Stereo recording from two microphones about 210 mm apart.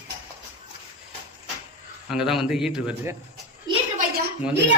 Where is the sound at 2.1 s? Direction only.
5° right (ahead or behind).